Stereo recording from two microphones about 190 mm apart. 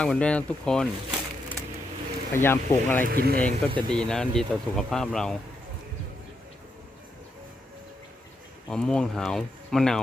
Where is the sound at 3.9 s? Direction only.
5° left (ahead or behind).